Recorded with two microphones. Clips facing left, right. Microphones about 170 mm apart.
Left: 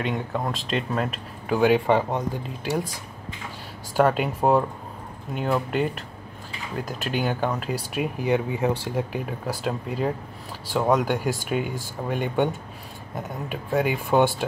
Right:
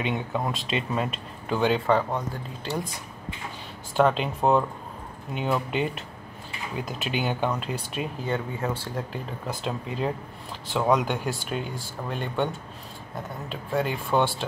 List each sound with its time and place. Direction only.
0.0 s speech: 5° right (ahead or behind)
1.9 s speech: 20° left (ahead or behind)
3.9 s speech: 5° left (ahead or behind)
13.5 s speech: 10° left (ahead or behind)